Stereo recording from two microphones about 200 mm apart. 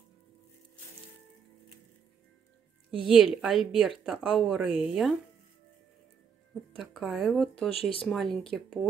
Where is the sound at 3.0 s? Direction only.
Centre (ahead or behind).